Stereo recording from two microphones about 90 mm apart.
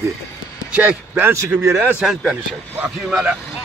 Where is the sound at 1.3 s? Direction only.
30° right (ahead or behind).